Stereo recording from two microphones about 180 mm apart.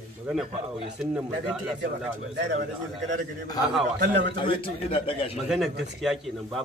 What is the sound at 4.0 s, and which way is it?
Speech, 80° right.